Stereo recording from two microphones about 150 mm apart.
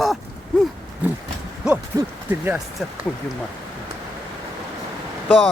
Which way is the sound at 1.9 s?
15° right (ahead or behind).